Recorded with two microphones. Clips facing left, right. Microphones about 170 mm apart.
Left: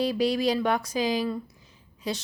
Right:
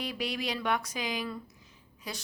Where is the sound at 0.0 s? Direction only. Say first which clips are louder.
Left 10 dB; 35° left (ahead or behind).